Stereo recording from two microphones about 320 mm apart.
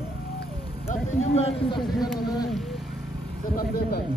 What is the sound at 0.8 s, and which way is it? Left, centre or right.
Speech, centre.